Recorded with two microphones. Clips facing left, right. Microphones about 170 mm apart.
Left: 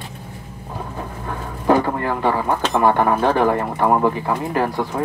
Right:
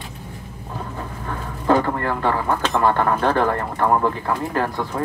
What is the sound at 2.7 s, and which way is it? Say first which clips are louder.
Speech: left 3 dB; 15° left (ahead or behind).